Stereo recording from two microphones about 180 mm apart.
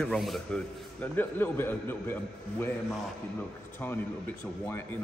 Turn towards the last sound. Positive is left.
turn(degrees=10)  # may be behind; listen again after turning